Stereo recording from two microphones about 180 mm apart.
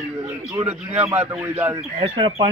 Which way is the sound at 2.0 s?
25° right (ahead or behind).